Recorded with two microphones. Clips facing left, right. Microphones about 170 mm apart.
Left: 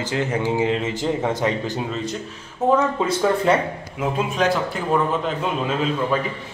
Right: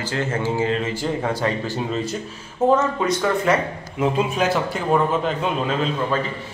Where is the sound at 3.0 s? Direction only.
30° left (ahead or behind).